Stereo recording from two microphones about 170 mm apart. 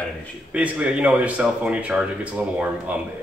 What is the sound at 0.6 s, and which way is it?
Speech, 5° right (ahead or behind).